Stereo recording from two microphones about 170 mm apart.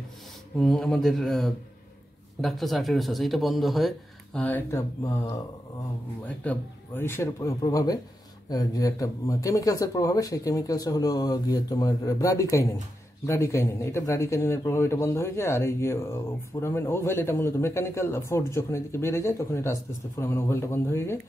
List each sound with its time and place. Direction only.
0.6 s a man's voice: 5° left (ahead or behind)